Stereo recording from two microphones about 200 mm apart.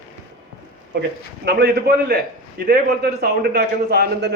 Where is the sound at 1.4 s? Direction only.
55° right (ahead or behind).